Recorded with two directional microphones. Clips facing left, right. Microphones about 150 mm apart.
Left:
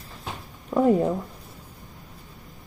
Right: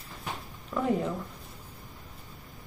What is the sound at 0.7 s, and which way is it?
Speech, 40° left (ahead or behind).